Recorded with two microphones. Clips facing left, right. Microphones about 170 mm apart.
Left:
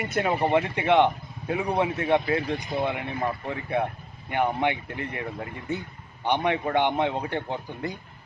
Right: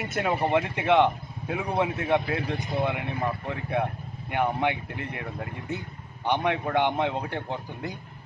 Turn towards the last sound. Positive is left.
turn(degrees=0)  # may be behind; listen again after turning